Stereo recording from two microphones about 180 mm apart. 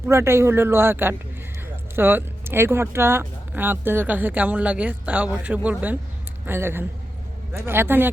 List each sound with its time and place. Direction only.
0.1 s a man's voice: 15° right (ahead or behind)